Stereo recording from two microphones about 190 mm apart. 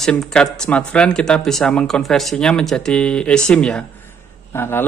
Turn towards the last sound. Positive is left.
turn(degrees=10)  # may be behind; listen again after turning